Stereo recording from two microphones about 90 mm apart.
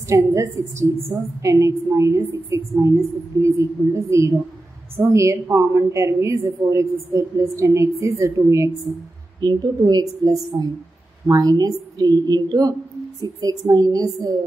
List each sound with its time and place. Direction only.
0.1 s a woman's voice: 35° right (ahead or behind)
9.4 s a woman's voice: 50° right (ahead or behind)
10.5 s a woman's voice: 35° right (ahead or behind)